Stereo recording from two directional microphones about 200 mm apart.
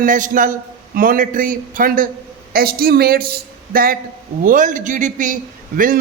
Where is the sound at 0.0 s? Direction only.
40° right (ahead or behind).